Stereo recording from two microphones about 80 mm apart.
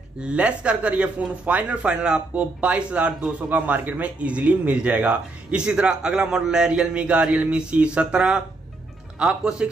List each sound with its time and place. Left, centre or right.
0.2 s speech: centre